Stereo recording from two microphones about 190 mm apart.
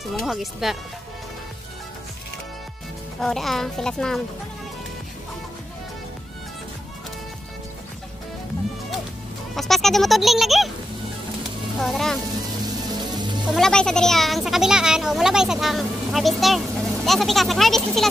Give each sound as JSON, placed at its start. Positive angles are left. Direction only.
{"t": 0.1, "sound": "a child's voice", "side_deg": 0}
{"t": 3.2, "sound": "a child's voice", "side_deg": 0}
{"t": 9.6, "sound": "a child's voice", "side_deg": 0}
{"t": 11.8, "sound": "a child's voice", "side_deg": 0}
{"t": 12.6, "sound": "music", "side_deg": -20}
{"t": 13.5, "sound": "a child's voice", "side_deg": 5}